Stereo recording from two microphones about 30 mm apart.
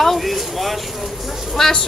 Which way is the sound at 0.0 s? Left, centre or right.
Centre.